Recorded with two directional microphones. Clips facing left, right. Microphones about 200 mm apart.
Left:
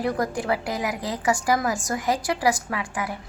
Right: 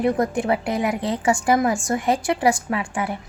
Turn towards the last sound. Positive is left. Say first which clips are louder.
# right 4 dB
turn(degrees=-25)  # may be behind; listen again after turning